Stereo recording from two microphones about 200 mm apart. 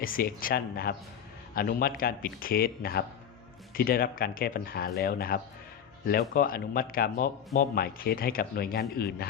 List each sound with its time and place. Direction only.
0.0 s speech: 45° left (ahead or behind)